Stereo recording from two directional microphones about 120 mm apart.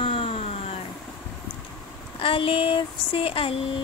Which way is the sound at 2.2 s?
50° left (ahead or behind).